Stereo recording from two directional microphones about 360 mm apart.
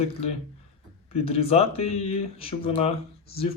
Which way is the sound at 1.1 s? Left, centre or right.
Centre.